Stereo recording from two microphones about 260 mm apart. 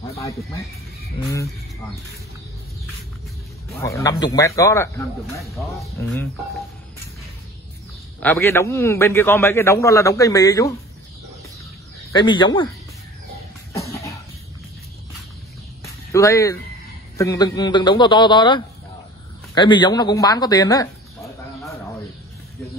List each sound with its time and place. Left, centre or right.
0.2 s a man's voice: centre
3.8 s a man's voice: centre
8.2 s a man's voice: centre
12.1 s a man's voice: centre
15.8 s a sound: centre
17.2 s a man's voice: centre